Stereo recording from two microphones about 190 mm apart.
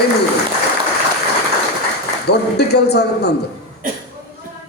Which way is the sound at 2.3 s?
60° left (ahead or behind).